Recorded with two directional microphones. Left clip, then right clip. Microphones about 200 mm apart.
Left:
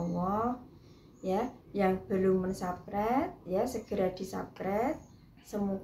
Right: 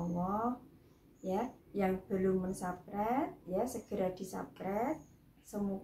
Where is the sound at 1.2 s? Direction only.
20° left (ahead or behind).